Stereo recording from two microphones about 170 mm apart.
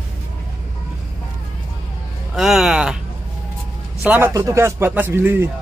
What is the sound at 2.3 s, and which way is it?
Speech, centre (ahead or behind).